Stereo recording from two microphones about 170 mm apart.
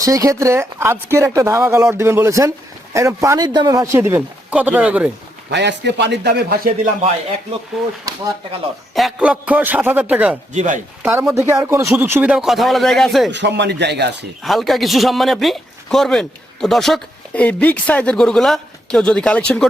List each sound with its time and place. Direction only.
0.0 s speech: 20° right (ahead or behind)
5.5 s a man's voice: 90° right
7.8 s a man's voice: centre (ahead or behind)
9.0 s speech: 5° right (ahead or behind)
10.5 s speech: 45° right (ahead or behind)
11.0 s a man's voice: 15° right (ahead or behind)
13.3 s speech: 90° right
14.4 s a man's voice: centre (ahead or behind)